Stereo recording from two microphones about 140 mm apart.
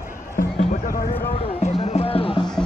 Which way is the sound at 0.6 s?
50° left (ahead or behind).